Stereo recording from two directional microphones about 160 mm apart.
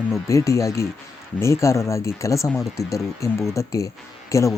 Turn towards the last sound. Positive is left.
turn(degrees=20)  # may be behind; listen again after turning